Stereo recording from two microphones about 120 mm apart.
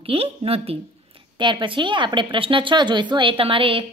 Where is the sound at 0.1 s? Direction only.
55° right (ahead or behind).